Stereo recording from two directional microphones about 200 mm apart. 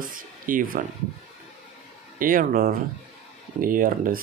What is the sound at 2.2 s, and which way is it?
Speech, 45° right (ahead or behind).